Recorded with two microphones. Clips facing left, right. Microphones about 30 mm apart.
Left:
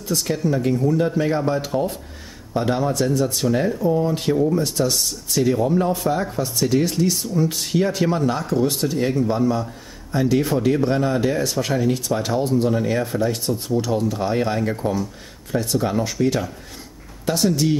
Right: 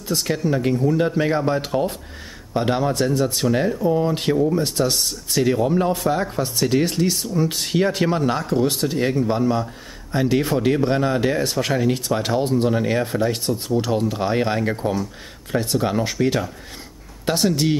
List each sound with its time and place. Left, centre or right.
0.1 s speech: right
3.4 s speech: centre
3.8 s speech: right
6.3 s speech: right
17.4 s speech: right